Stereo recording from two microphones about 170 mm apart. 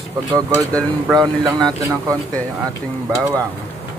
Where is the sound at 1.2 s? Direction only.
25° right (ahead or behind).